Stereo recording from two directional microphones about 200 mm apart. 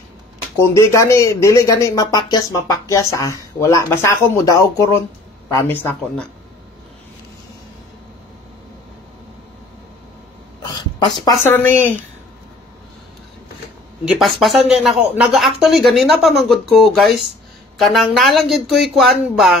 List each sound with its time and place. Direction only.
0.6 s speech: 15° left (ahead or behind)
11.0 s a woman's voice: 20° left (ahead or behind)
11.4 s speech: 10° left (ahead or behind)
14.0 s speech: 5° right (ahead or behind)